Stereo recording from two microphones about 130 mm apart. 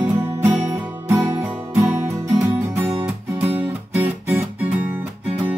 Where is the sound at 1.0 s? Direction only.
15° right (ahead or behind).